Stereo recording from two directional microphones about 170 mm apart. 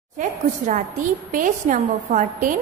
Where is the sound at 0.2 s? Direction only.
50° right (ahead or behind).